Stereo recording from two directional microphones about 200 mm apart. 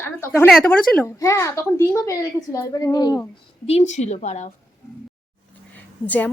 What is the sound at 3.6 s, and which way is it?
Speech, 35° left (ahead or behind).